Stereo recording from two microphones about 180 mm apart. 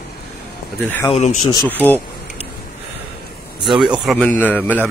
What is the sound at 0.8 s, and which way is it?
Speech, 10° left (ahead or behind).